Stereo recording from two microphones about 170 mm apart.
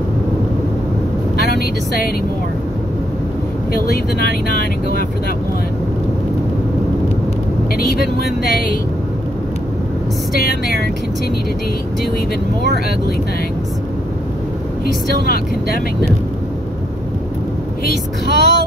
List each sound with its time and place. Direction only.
10.4 s speech: 65° left (ahead or behind)
15.2 s speech: 60° left (ahead or behind)
18.3 s speech: 85° right